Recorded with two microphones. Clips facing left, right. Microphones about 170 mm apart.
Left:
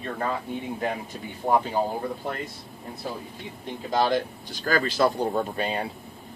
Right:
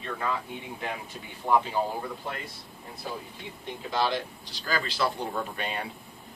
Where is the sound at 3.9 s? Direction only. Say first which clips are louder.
Left 5 dB; 45° left (ahead or behind).